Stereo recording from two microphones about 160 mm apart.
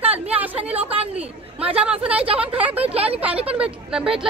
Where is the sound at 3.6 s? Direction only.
5° right (ahead or behind).